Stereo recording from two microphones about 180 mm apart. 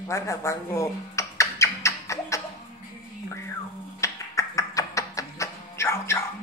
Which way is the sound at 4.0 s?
15° left (ahead or behind).